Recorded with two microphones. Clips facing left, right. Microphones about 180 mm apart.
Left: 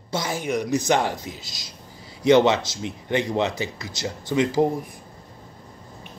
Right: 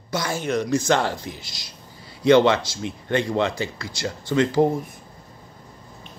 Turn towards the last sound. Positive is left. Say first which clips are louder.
# right 1 dB
turn(degrees=20)  # may be behind; listen again after turning